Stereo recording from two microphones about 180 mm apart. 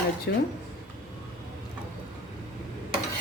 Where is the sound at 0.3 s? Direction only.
75° left (ahead or behind).